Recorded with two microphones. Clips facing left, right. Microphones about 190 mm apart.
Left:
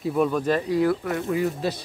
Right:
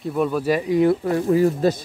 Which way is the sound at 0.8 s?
25° right (ahead or behind).